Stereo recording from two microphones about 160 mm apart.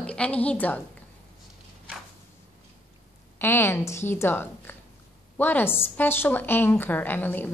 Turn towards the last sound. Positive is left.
turn(degrees=10)  # may be behind; listen again after turning